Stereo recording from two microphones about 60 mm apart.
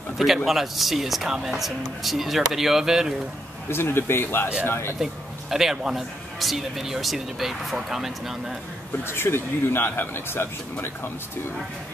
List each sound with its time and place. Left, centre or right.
0.5 s speech: centre
3.6 s speech: left
5.0 s a man's voice: centre
9.0 s speech: left